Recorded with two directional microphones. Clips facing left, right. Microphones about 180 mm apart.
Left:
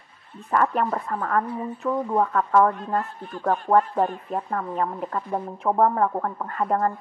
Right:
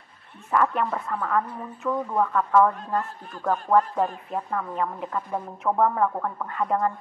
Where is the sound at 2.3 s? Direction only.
35° left (ahead or behind).